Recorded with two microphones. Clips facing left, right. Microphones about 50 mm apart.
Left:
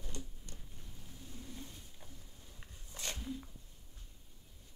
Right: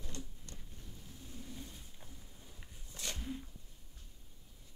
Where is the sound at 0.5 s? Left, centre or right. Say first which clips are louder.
Right 1 dB; centre.